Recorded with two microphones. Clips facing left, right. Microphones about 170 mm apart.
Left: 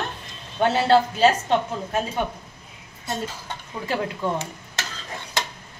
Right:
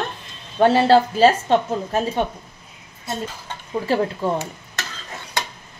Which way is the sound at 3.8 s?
35° right (ahead or behind).